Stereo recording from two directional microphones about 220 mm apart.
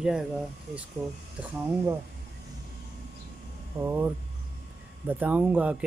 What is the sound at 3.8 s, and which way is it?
Speech, 10° right (ahead or behind).